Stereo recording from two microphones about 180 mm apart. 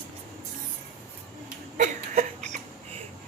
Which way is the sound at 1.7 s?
40° right (ahead or behind).